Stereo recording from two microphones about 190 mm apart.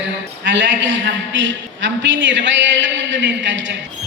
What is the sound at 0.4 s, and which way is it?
A man's voice, 75° right (ahead or behind).